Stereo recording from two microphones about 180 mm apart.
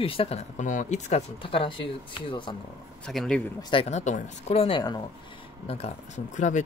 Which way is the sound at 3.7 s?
40° left (ahead or behind).